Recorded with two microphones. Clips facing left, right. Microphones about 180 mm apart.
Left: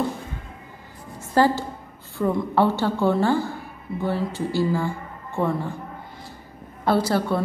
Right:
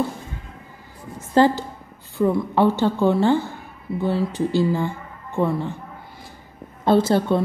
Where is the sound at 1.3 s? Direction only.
20° right (ahead or behind).